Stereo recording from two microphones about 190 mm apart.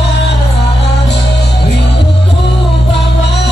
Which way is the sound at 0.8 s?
60° left (ahead or behind).